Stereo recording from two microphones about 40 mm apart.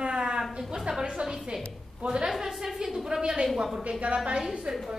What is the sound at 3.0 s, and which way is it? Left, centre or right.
Speech, centre.